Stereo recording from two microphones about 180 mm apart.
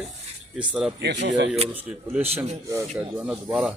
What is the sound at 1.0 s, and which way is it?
Speech, 75° right (ahead or behind).